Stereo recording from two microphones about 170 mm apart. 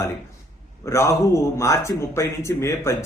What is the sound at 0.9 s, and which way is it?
Speech, 15° left (ahead or behind).